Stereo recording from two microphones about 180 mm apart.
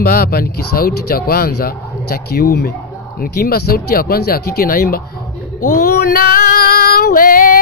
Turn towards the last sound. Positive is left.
turn(degrees=50)  # may be behind; listen again after turning